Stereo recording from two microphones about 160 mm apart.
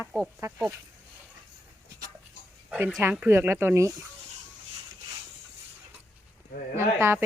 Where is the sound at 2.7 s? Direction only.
5° right (ahead or behind).